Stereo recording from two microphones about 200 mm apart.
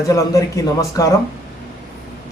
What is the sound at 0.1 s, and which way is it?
Speech, 15° left (ahead or behind).